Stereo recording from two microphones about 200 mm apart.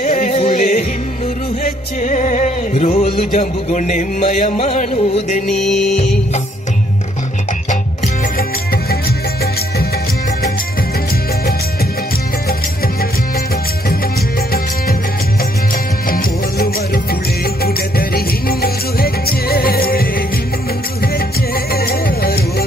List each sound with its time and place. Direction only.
0.0 s music: 40° left (ahead or behind)
5.5 s music: centre (ahead or behind)
15.7 s music: 45° left (ahead or behind)
21.7 s music: 50° left (ahead or behind)